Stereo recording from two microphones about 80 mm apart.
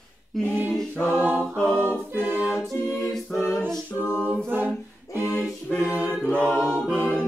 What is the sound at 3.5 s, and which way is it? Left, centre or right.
A capella, centre.